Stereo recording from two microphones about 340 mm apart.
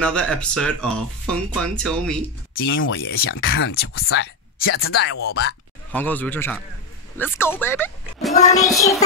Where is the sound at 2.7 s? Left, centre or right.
Left.